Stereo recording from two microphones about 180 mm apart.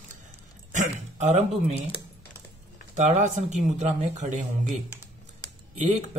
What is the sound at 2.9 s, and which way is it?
Speech, 40° right (ahead or behind).